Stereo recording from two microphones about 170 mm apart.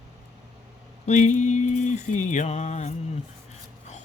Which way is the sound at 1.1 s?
45° left (ahead or behind).